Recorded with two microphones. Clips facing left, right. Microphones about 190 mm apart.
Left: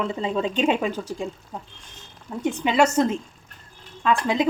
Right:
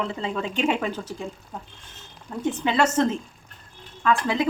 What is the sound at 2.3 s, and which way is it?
A woman's voice, 10° left (ahead or behind).